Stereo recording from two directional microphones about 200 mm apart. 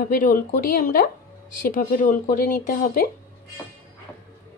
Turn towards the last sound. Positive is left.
turn(degrees=45)  # may be behind; listen again after turning